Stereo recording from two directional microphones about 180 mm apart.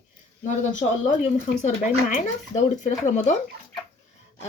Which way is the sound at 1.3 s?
45° left (ahead or behind).